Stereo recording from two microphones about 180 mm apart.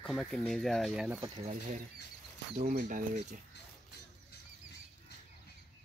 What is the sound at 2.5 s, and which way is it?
Speech, 45° right (ahead or behind).